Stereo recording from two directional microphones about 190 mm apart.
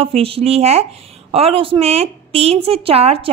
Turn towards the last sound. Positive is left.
turn(degrees=-30)  # may be behind; listen again after turning